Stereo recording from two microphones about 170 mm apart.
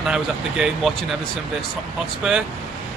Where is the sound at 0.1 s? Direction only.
5° right (ahead or behind).